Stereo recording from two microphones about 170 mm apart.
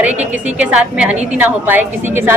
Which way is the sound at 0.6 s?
5° right (ahead or behind).